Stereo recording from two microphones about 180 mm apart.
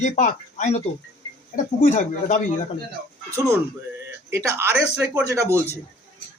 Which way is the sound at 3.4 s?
15° right (ahead or behind).